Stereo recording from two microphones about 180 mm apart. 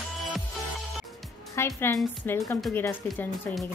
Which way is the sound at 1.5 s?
15° left (ahead or behind).